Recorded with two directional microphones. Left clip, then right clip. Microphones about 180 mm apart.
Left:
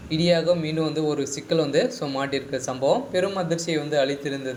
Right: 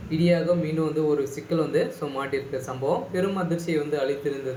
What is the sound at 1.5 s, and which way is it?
Speech, 30° left (ahead or behind).